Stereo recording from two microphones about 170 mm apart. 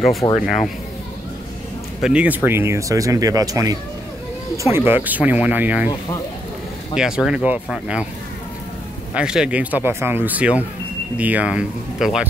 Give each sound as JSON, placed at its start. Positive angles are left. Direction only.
{"t": 0.2, "sound": "speech", "side_deg": 20}
{"t": 2.0, "sound": "speech", "side_deg": -5}
{"t": 7.0, "sound": "speech", "side_deg": -5}
{"t": 9.1, "sound": "speech", "side_deg": -5}